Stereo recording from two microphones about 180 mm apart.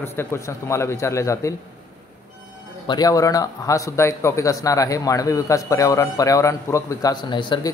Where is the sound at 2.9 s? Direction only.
20° left (ahead or behind).